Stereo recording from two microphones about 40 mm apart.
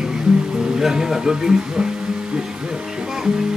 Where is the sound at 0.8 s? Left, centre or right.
Centre.